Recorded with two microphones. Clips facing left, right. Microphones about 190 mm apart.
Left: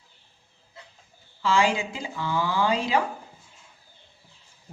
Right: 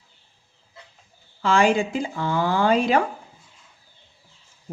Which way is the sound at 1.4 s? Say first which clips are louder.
Right 4 dB; 55° right (ahead or behind).